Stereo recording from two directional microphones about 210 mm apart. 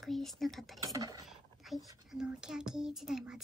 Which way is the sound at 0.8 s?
15° right (ahead or behind).